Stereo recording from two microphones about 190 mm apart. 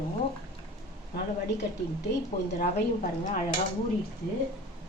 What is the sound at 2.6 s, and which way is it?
Chink, 45° left (ahead or behind).